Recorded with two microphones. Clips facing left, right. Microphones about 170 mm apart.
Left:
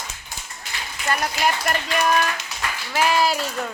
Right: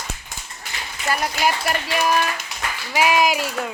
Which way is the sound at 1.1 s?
5° right (ahead or behind).